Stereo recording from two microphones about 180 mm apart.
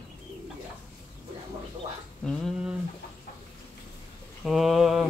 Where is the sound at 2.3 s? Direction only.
Centre (ahead or behind).